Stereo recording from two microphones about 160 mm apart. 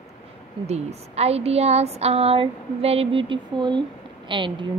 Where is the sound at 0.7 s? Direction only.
40° right (ahead or behind).